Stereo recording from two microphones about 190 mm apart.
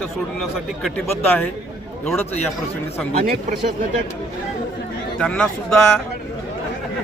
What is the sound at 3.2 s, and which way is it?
Speech, 50° right (ahead or behind).